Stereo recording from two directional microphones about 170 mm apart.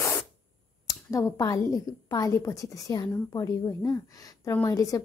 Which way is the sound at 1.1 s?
20° left (ahead or behind).